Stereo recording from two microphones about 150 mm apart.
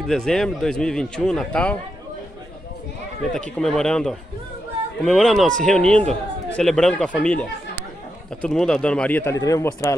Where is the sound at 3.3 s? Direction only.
5° left (ahead or behind).